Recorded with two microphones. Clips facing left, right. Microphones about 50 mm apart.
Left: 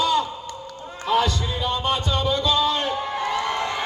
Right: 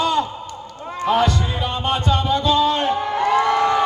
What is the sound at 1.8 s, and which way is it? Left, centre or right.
Music, right.